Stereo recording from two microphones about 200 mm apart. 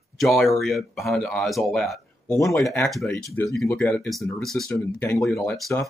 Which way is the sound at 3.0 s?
10° left (ahead or behind).